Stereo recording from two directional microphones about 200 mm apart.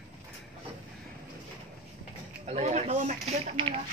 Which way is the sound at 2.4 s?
35° right (ahead or behind).